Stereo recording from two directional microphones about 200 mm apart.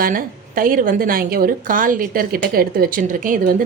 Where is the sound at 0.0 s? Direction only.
45° right (ahead or behind).